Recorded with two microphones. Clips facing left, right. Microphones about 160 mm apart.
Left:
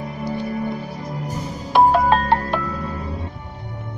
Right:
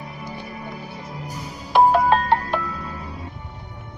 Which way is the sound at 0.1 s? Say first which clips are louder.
Left 9 dB; 40° left (ahead or behind).